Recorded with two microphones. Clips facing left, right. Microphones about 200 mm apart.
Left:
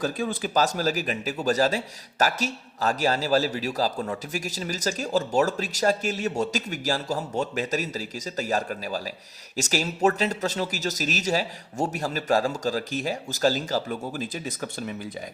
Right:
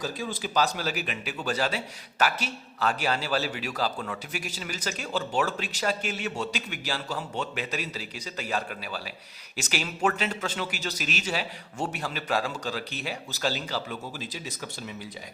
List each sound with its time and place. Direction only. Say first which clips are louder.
0.0 s speech: left 5 dB; 55° left (ahead or behind)